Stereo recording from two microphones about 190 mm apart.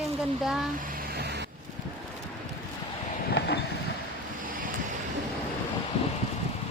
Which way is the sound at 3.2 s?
60° left (ahead or behind).